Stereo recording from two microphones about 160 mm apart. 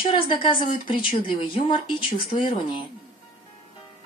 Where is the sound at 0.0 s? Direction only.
30° left (ahead or behind).